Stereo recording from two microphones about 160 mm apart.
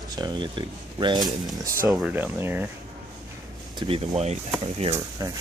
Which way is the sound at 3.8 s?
35° right (ahead or behind).